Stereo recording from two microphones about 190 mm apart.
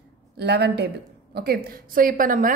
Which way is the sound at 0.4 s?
60° right (ahead or behind).